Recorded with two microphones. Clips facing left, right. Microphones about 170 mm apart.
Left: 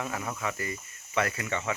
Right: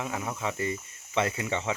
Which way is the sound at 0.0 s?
15° right (ahead or behind).